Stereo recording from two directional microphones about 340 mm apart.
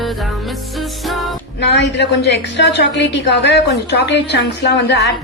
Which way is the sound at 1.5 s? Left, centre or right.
Left.